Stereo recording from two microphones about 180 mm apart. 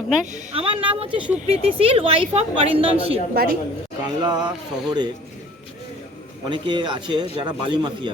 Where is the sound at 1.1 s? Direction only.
5° right (ahead or behind).